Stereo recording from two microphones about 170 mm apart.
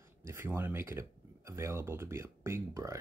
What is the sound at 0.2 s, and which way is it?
Speech, 15° right (ahead or behind).